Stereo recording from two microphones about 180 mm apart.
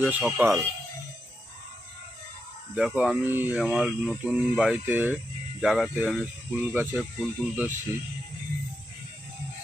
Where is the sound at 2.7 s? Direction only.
5° right (ahead or behind).